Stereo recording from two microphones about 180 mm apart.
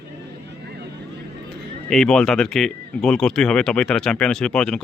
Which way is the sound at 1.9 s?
5° left (ahead or behind).